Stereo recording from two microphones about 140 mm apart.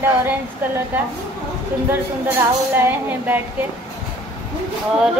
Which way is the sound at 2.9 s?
15° right (ahead or behind).